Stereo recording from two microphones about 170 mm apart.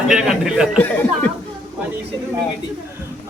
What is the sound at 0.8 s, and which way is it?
Speech, 10° left (ahead or behind).